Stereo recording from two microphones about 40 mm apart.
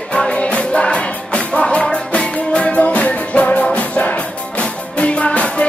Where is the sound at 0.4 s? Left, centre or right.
Left.